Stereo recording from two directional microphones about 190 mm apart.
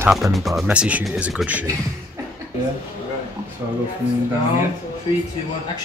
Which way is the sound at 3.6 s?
15° right (ahead or behind).